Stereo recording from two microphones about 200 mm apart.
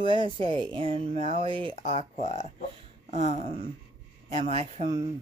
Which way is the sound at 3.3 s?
35° right (ahead or behind).